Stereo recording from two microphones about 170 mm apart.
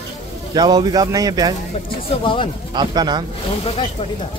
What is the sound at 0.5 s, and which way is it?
Speech, 25° right (ahead or behind).